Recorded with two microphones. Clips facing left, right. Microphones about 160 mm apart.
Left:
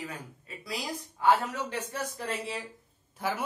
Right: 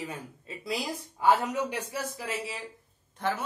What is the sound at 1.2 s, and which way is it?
Speech, 15° right (ahead or behind).